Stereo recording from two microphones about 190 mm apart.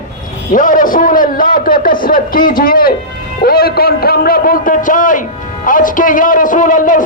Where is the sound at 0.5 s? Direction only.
45° left (ahead or behind).